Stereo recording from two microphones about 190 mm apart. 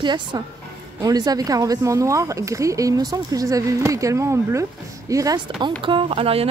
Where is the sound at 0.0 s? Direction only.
20° right (ahead or behind).